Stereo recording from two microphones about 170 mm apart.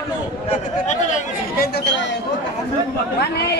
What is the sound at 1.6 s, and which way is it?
Speech, 90° left.